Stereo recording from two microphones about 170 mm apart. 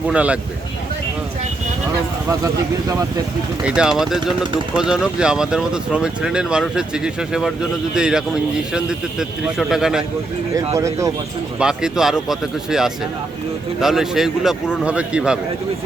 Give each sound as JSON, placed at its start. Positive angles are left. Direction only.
{"t": 0.1, "sound": "a man's voice", "side_deg": -5}
{"t": 3.6, "sound": "speech", "side_deg": -5}
{"t": 10.8, "sound": "a man's voice", "side_deg": -15}
{"t": 11.6, "sound": "a man's voice", "side_deg": -5}